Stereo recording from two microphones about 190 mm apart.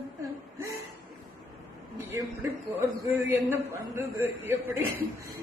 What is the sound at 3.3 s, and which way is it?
A man's voice, 10° right (ahead or behind).